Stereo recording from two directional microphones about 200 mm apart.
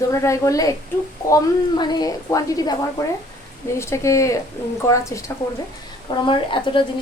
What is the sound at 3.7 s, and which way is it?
A woman's voice, 15° left (ahead or behind).